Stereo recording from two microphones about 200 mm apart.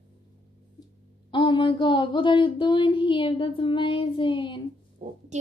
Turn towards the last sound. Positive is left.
turn(degrees=-40)  # may be behind; listen again after turning